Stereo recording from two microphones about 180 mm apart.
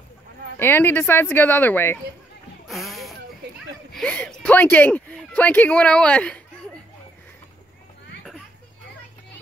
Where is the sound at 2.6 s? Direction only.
Centre (ahead or behind).